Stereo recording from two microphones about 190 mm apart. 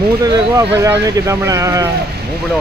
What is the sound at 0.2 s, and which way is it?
Speech, 20° right (ahead or behind).